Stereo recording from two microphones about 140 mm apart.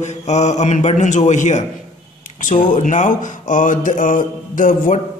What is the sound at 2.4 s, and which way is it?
Speech, 70° left (ahead or behind).